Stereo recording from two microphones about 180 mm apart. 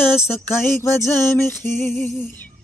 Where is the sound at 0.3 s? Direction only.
15° left (ahead or behind).